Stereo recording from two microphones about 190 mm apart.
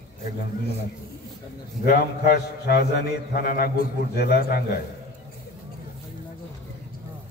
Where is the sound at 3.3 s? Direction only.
50° left (ahead or behind).